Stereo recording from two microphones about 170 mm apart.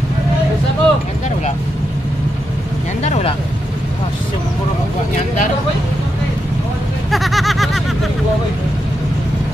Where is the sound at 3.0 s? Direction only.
40° left (ahead or behind).